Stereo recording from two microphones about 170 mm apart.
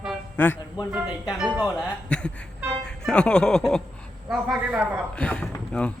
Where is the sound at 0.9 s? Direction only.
5° right (ahead or behind).